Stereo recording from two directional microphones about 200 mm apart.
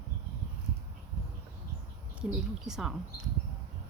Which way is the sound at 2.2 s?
Centre (ahead or behind).